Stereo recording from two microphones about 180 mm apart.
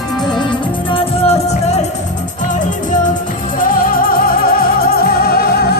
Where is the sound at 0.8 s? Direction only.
30° left (ahead or behind).